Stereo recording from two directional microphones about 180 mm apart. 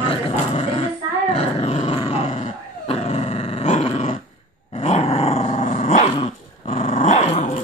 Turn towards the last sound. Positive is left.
turn(degrees=35)  # may be behind; listen again after turning